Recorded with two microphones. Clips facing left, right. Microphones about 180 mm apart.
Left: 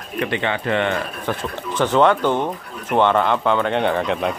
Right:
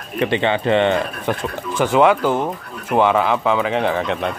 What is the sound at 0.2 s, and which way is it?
Speech, 25° right (ahead or behind).